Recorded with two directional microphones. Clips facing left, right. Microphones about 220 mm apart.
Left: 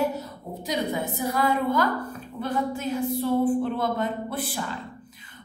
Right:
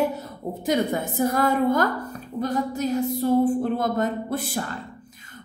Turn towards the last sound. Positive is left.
turn(degrees=-45)  # may be behind; listen again after turning